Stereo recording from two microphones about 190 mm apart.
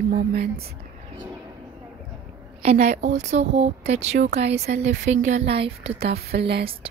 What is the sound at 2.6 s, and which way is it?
Speech, 40° right (ahead or behind).